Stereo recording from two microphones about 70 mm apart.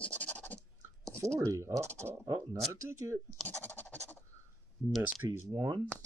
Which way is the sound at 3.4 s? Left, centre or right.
Left.